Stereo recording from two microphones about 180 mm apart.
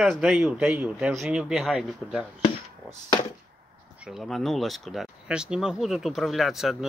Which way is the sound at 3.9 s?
5° right (ahead or behind).